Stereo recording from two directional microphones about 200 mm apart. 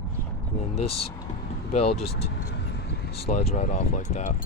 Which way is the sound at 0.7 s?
30° left (ahead or behind).